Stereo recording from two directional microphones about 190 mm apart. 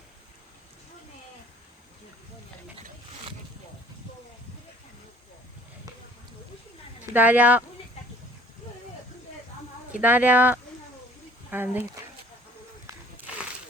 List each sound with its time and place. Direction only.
7.1 s speech: 10° right (ahead or behind)
9.9 s speech: 10° right (ahead or behind)
12.9 s a sound: 15° right (ahead or behind)